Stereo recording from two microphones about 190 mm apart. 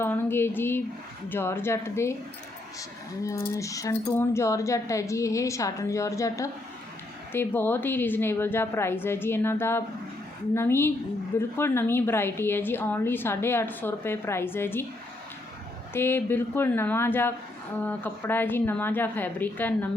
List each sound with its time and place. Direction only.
0.0 s a woman's voice: 10° left (ahead or behind)
3.2 s a woman's voice: 15° left (ahead or behind)
15.9 s a woman's voice: 10° left (ahead or behind)